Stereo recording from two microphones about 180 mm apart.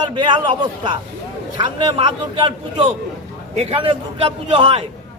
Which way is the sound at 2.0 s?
30° right (ahead or behind).